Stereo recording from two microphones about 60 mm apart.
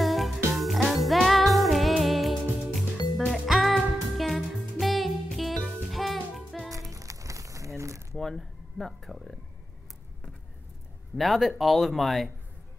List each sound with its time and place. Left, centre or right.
0.0 s music: centre
6.7 s music: right
8.2 s speech: centre
11.1 s speech: centre